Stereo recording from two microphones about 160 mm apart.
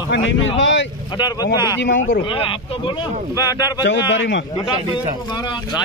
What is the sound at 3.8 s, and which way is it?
Speech, 90° left.